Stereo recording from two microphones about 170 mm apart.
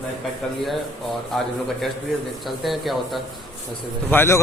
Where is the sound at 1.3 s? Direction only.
5° left (ahead or behind).